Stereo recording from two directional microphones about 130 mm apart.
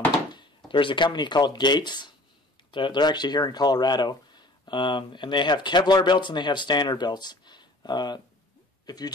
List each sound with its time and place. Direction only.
0.7 s speech: 40° left (ahead or behind)